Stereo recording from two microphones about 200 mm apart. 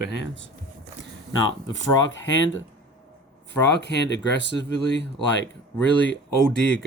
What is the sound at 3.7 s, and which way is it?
Speech, 60° left (ahead or behind).